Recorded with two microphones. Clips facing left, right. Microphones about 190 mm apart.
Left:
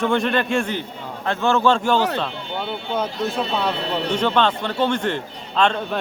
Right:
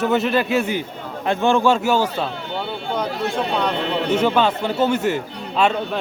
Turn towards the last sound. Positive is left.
turn(degrees=-5)  # may be behind; listen again after turning